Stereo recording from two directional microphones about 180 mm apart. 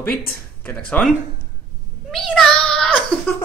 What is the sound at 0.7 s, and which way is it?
Speech, 5° left (ahead or behind).